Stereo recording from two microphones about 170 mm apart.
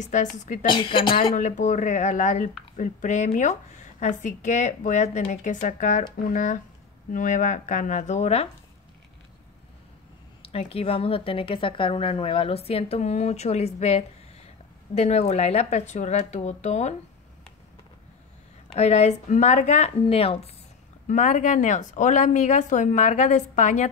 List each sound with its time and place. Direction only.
0.0 s speech: 45° left (ahead or behind)
0.7 s a woman's voice: 30° left (ahead or behind)
1.3 s speech: 50° left (ahead or behind)
10.4 s speech: 35° left (ahead or behind)
18.8 s speech: 40° left (ahead or behind)
21.1 s speech: 45° left (ahead or behind)